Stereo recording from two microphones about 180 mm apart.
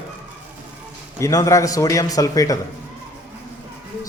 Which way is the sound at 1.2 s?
20° left (ahead or behind).